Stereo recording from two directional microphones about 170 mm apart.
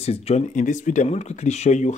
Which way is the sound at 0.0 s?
35° left (ahead or behind).